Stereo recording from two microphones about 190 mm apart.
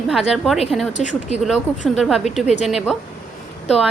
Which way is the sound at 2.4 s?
35° left (ahead or behind).